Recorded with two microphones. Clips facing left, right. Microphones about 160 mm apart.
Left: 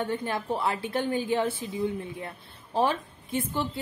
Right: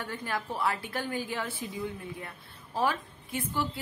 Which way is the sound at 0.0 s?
25° left (ahead or behind).